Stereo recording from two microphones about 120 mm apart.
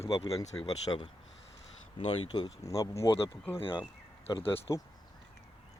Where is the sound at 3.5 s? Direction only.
50° left (ahead or behind).